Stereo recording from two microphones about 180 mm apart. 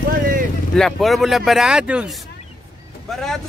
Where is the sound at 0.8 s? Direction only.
Centre (ahead or behind).